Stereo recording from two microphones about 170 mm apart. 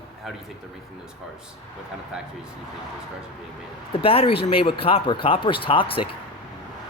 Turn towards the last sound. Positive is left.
turn(degrees=30)  # may be behind; listen again after turning